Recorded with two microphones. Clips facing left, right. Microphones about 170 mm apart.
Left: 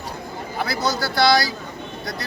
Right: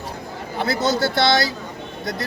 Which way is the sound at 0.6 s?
25° right (ahead or behind).